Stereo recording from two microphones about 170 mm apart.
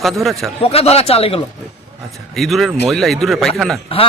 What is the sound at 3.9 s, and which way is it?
Speech, 35° left (ahead or behind).